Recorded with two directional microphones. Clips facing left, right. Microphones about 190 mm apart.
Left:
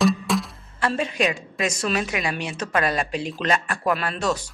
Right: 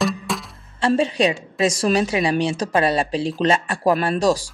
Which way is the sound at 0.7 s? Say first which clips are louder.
Right 6 dB; 30° right (ahead or behind).